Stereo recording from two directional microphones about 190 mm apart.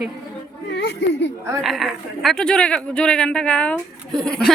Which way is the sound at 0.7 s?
65° left (ahead or behind).